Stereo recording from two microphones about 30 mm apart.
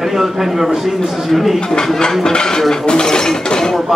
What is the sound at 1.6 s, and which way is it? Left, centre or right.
Speech, left.